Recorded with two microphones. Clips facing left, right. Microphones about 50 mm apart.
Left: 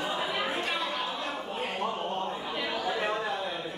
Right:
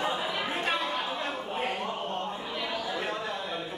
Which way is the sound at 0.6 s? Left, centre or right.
Right.